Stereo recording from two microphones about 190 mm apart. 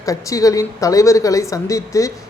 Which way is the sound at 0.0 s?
15° left (ahead or behind).